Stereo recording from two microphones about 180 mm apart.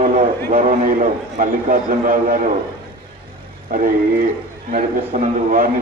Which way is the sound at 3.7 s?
50° right (ahead or behind).